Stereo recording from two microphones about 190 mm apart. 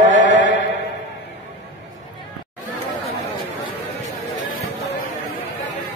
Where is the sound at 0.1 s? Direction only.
75° left (ahead or behind).